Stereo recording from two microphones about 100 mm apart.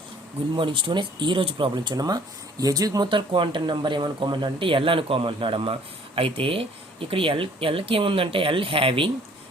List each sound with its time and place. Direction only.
0.5 s speech: 55° right (ahead or behind); by 3.1 s 35° right (ahead or behind)
3.1 s speech: 55° right (ahead or behind)